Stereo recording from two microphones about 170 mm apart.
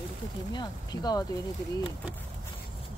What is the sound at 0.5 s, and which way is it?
Speech, 25° left (ahead or behind).